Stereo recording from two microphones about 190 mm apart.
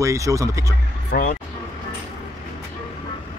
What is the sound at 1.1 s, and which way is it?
Speech, 40° left (ahead or behind).